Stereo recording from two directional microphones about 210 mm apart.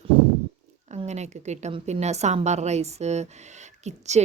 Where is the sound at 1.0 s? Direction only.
35° right (ahead or behind).